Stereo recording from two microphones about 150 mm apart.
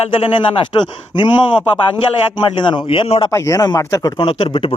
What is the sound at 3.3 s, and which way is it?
Speech, 20° left (ahead or behind).